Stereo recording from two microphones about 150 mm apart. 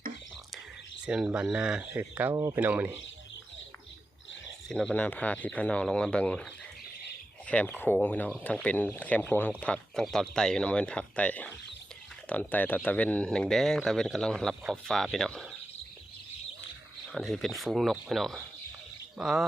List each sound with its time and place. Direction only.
1.0 s speech: 5° right (ahead or behind)
2.3 s speech: 25° right (ahead or behind)
2.6 s speech: 15° right (ahead or behind)
4.7 s speech: 5° left (ahead or behind)
7.4 s speech: 10° left (ahead or behind)
17.1 s speech: centre (ahead or behind)